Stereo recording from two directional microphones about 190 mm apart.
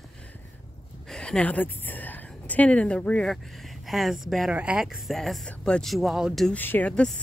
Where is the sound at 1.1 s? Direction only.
5° left (ahead or behind).